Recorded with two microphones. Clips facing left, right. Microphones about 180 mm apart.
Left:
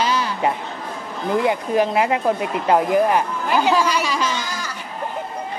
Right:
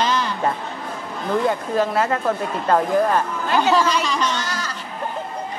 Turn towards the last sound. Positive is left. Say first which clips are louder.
# right 1 dB
turn(degrees=10)  # may be behind; listen again after turning